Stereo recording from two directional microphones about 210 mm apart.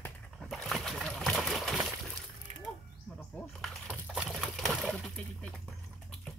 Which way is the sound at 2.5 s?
30° right (ahead or behind).